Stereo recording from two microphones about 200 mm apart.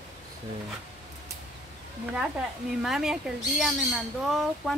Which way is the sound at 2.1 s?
5° right (ahead or behind).